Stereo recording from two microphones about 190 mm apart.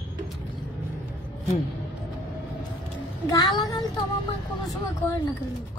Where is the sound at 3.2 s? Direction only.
25° left (ahead or behind).